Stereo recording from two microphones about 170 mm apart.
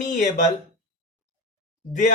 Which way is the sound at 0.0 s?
50° left (ahead or behind).